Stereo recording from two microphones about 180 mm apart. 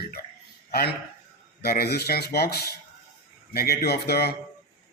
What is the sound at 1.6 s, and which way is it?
Speech, 60° left (ahead or behind).